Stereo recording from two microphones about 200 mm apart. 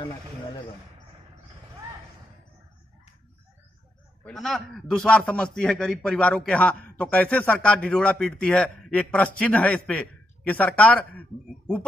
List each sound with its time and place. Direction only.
4.2 s a man's voice: centre (ahead or behind)